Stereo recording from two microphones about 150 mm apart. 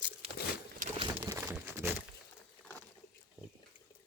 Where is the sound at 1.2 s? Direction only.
15° right (ahead or behind).